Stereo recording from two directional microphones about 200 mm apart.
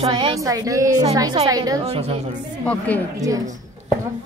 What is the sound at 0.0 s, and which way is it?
A woman's voice, 20° right (ahead or behind).